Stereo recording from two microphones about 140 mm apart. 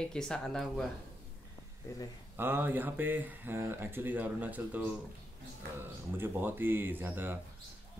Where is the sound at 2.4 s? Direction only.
15° right (ahead or behind).